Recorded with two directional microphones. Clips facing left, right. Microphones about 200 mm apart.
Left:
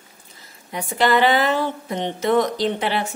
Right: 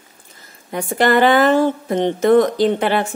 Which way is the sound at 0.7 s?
50° right (ahead or behind).